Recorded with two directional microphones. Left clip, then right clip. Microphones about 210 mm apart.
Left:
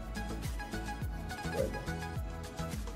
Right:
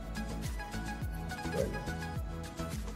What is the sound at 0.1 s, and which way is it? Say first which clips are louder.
Music: even; centre (ahead or behind).